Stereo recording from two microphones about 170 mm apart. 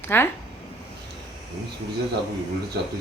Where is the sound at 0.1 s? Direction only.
15° left (ahead or behind).